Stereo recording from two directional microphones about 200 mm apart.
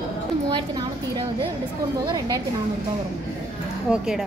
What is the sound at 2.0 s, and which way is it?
Speech, 20° right (ahead or behind).